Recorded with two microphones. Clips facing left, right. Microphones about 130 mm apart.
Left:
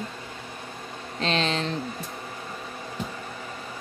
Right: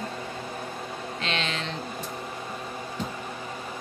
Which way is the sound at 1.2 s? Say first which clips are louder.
Left 6 dB; 35° left (ahead or behind).